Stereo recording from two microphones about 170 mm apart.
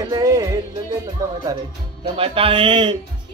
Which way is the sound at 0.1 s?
20° right (ahead or behind).